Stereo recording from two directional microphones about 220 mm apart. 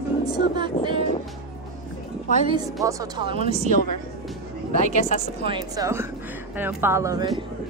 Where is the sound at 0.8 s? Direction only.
30° left (ahead or behind).